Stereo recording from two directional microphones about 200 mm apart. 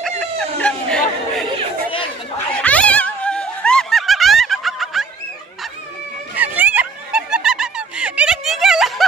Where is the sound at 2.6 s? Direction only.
5° left (ahead or behind).